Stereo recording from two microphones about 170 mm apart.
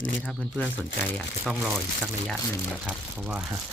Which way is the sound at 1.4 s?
Centre (ahead or behind).